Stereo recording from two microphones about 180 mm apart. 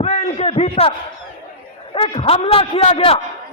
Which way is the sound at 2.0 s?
30° left (ahead or behind).